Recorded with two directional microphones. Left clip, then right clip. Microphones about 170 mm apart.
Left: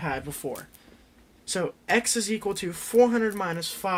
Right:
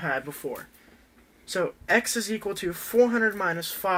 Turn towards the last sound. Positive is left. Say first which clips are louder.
# right 3 dB
turn(degrees=45)  # may be behind; listen again after turning